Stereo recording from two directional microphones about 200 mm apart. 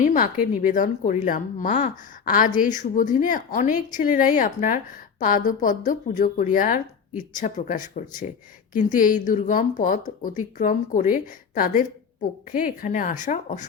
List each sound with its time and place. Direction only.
0.0 s speech: 45° left (ahead or behind)